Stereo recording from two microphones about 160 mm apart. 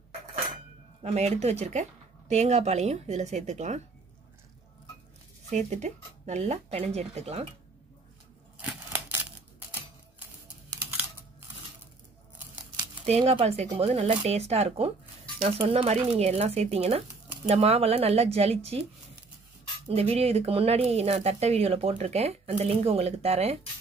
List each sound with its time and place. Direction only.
1.0 s speech: 45° right (ahead or behind)
5.5 s speech: 50° right (ahead or behind)
8.5 s a sound: 10° right (ahead or behind)
13.0 s speech: 40° right (ahead or behind)
19.9 s speech: 40° right (ahead or behind)